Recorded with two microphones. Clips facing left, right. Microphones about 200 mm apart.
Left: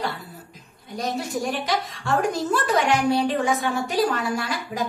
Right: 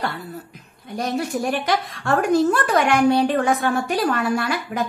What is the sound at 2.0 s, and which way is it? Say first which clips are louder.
A woman's voice: right 6 dB; 60° right (ahead or behind).